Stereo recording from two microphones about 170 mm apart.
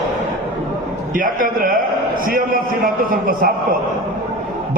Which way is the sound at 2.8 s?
60° right (ahead or behind).